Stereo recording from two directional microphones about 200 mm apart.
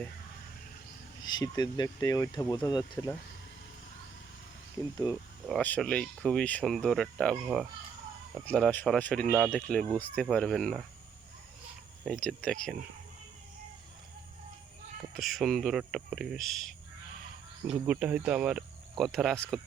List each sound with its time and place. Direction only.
1.2 s speech: 20° left (ahead or behind)
5.5 s speech: 5° left (ahead or behind)
12.0 s speech: 5° left (ahead or behind)
15.1 s speech: centre (ahead or behind)
17.8 s speech: 10° right (ahead or behind)